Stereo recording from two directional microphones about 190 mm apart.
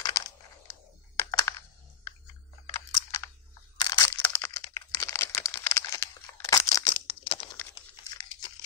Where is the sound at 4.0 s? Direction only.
15° left (ahead or behind).